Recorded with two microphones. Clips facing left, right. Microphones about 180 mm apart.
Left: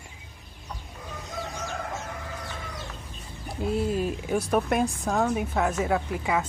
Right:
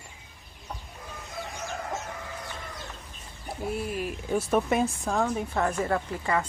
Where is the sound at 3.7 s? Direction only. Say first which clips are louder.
Left 6 dB; 25° left (ahead or behind).